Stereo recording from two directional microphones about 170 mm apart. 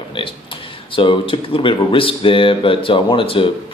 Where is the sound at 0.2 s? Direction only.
30° left (ahead or behind).